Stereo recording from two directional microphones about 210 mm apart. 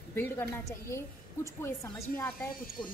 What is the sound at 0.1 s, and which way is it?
A woman's voice, 10° left (ahead or behind).